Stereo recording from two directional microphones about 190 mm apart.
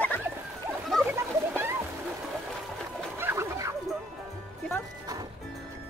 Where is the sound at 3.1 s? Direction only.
15° right (ahead or behind).